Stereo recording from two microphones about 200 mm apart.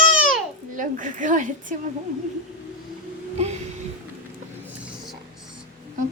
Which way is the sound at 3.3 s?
35° right (ahead or behind).